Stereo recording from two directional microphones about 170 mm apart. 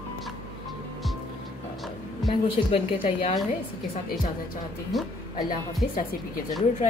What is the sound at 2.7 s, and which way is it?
Speech, 30° left (ahead or behind).